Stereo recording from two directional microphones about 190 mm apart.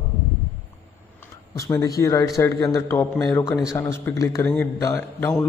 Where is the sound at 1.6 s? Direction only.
15° left (ahead or behind).